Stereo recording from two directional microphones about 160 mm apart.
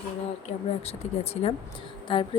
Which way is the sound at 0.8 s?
40° left (ahead or behind).